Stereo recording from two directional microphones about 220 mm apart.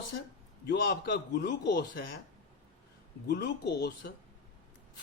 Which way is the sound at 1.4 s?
45° left (ahead or behind).